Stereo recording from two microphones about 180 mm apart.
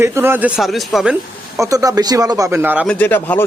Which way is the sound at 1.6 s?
20° right (ahead or behind).